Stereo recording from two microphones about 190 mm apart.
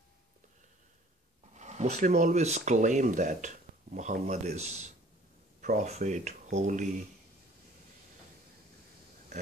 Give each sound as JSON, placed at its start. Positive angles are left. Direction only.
{"t": 1.6, "sound": "speech", "side_deg": -40}